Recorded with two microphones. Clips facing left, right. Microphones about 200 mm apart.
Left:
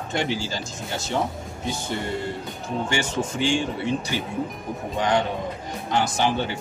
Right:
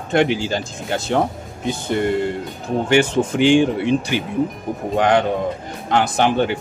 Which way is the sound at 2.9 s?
60° right (ahead or behind).